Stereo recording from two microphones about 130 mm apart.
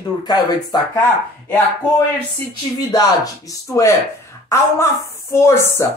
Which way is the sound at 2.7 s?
30° left (ahead or behind).